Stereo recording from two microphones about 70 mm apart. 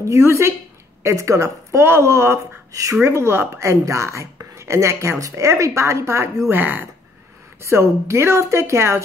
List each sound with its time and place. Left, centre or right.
0.0 s a woman's voice: right
2.7 s speech: right
6.5 s speech: right
7.6 s a woman's voice: right